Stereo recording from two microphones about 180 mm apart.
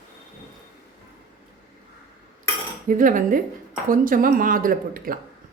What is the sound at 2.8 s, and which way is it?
Speech, 45° right (ahead or behind).